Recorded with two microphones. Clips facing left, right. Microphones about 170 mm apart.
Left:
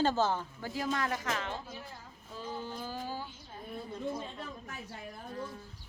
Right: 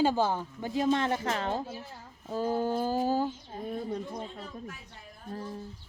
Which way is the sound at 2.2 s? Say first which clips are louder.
Right 12 dB; 45° right (ahead or behind).